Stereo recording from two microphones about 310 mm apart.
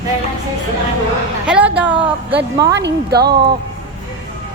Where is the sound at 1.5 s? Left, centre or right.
Centre.